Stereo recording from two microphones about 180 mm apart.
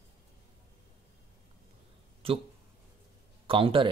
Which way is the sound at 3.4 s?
30° right (ahead or behind).